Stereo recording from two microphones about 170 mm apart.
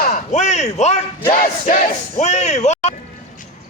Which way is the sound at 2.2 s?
40° left (ahead or behind).